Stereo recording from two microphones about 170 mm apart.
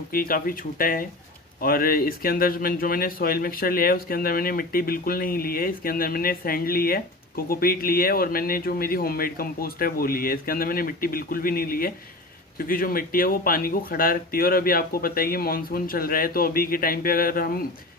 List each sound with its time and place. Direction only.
0.1 s a man's voice: 55° left (ahead or behind)